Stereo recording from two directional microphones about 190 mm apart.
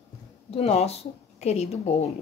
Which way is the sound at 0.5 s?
35° left (ahead or behind).